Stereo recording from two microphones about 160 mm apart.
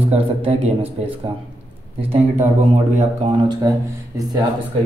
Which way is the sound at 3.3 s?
30° right (ahead or behind).